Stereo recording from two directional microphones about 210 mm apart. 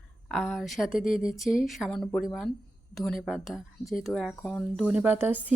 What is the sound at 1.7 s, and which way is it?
A woman's voice, centre (ahead or behind).